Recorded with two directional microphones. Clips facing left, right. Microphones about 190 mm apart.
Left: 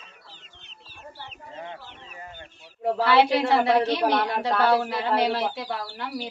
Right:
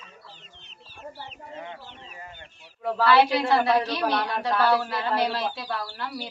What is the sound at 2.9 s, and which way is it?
A woman's voice, 20° left (ahead or behind).